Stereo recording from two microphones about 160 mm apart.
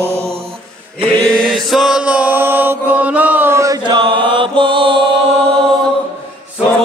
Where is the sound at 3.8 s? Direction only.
30° right (ahead or behind).